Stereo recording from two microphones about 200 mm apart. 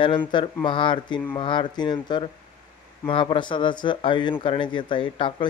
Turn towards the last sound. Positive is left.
turn(degrees=25)  # may be behind; listen again after turning